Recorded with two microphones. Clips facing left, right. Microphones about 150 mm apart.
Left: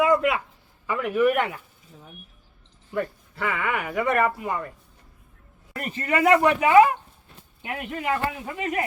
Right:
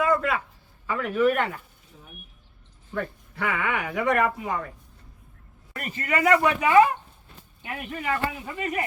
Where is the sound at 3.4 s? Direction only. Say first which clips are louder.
Even; centre (ahead or behind).